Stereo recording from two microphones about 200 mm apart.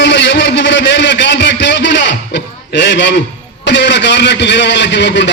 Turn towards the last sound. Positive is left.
turn(degrees=60)  # may be behind; listen again after turning